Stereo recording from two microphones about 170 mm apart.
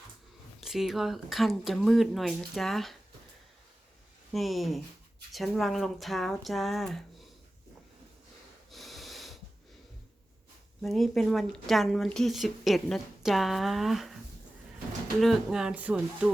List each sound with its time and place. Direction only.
0.6 s speech: centre (ahead or behind)
4.3 s speech: centre (ahead or behind)
8.7 s snort: centre (ahead or behind)
10.8 s speech: centre (ahead or behind)
15.2 s speech: centre (ahead or behind)